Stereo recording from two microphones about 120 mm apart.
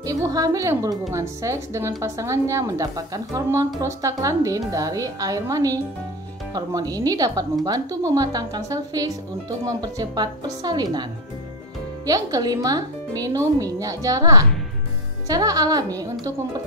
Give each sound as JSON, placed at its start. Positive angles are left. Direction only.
{"t": 0.0, "sound": "speech", "side_deg": -30}
{"t": 12.1, "sound": "speech", "side_deg": -30}